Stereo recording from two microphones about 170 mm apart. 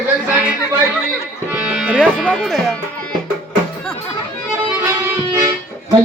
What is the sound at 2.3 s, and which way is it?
Speech, centre (ahead or behind).